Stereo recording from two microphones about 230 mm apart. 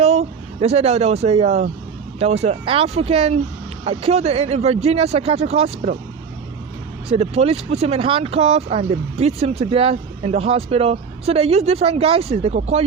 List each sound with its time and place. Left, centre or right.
0.0 s speech: right
7.1 s speech: right